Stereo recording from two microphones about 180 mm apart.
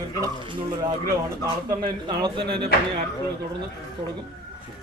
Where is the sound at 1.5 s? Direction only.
20° right (ahead or behind).